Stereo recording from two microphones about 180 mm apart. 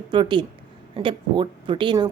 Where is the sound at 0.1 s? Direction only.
25° right (ahead or behind).